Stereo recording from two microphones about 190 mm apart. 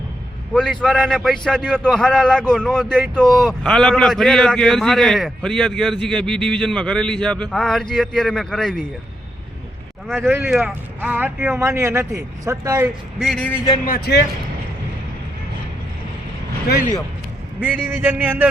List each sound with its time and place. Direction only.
0.5 s a man's voice: 5° left (ahead or behind)
10.2 s speech: 10° right (ahead or behind)
13.1 s a man's voice: centre (ahead or behind)
13.8 s speech: 55° left (ahead or behind)
17.8 s speech: 10° right (ahead or behind)